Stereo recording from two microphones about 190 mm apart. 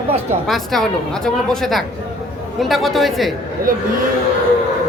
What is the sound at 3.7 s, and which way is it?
Speech, 45° right (ahead or behind).